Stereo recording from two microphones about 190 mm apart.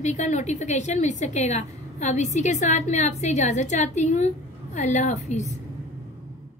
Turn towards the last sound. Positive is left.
turn(degrees=35)  # may be behind; listen again after turning